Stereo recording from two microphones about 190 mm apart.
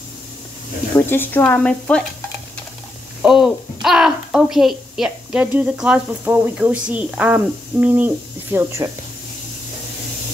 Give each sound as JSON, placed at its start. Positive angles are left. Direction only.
{"t": 0.9, "sound": "speech", "side_deg": 10}
{"t": 3.2, "sound": "a child's voice", "side_deg": -5}